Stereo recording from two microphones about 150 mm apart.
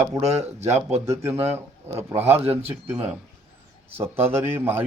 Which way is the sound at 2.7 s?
15° right (ahead or behind).